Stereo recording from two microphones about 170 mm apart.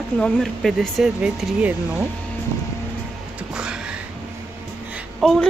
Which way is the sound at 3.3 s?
5° right (ahead or behind).